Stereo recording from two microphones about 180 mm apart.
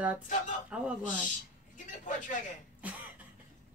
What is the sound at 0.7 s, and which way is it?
Speech, 5° right (ahead or behind).